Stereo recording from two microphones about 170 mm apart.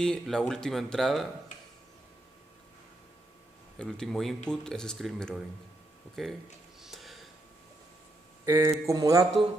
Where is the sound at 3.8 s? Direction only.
5° left (ahead or behind).